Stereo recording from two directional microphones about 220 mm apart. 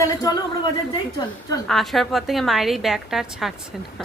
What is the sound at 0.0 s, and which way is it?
Speech, 15° left (ahead or behind).